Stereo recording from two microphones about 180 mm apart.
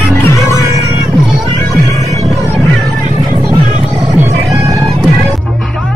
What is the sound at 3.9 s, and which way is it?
Music, 15° right (ahead or behind).